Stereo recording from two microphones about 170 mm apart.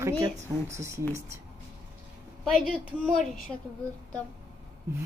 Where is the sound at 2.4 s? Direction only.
Centre (ahead or behind).